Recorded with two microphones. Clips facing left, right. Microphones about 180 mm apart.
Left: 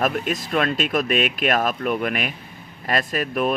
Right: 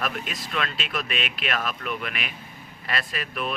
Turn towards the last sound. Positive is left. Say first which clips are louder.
# left 9 dB
turn(degrees=45)  # may be behind; listen again after turning